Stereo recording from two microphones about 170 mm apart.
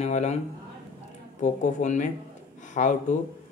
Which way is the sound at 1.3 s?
45° left (ahead or behind).